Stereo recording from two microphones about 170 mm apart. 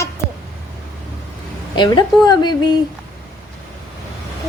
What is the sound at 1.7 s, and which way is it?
A woman's voice, 25° left (ahead or behind).